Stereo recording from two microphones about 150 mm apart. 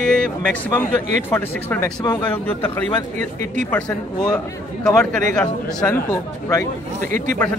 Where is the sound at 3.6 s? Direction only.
10° left (ahead or behind).